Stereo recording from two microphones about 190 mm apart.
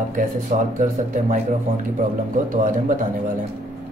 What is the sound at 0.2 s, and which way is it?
Speech, 45° right (ahead or behind).